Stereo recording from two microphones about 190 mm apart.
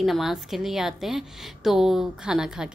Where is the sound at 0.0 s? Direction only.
Centre (ahead or behind).